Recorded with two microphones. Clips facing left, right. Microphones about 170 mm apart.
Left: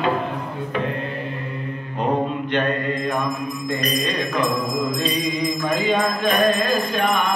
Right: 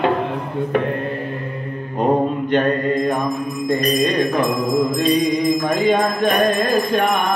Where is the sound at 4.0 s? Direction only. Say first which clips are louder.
Right 5 dB; 50° right (ahead or behind).